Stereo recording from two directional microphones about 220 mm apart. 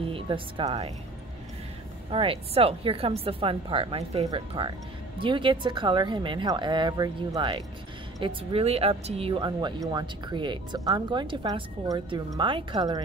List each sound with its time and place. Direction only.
0.0 s speech: 25° right (ahead or behind)
2.0 s speech: 25° right (ahead or behind)